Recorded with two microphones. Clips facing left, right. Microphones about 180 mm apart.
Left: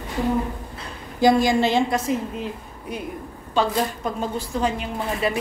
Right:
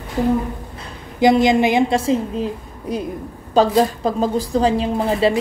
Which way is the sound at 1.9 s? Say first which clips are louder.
Right 5 dB; 30° right (ahead or behind).